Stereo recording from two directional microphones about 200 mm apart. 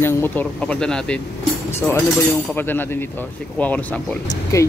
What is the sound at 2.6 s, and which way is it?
Speech, 10° left (ahead or behind).